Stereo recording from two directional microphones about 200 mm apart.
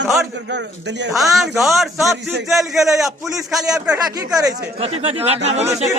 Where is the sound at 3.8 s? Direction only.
20° right (ahead or behind).